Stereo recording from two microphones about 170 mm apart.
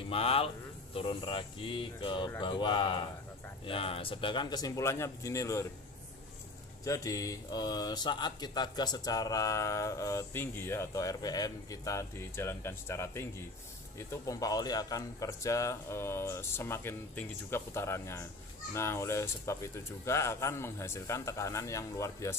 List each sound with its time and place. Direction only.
0.1 s speech: 35° left (ahead or behind); by 5.7 s 15° left (ahead or behind)
6.8 s speech: 20° left (ahead or behind)